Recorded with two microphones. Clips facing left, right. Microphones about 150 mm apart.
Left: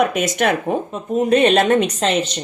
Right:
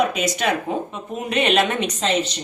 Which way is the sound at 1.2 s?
40° left (ahead or behind).